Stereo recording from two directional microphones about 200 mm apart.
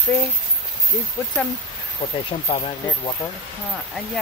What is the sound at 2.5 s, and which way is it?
Speech, 25° left (ahead or behind).